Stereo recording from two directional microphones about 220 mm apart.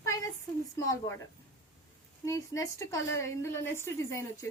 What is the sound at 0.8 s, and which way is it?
Speech, 15° left (ahead or behind).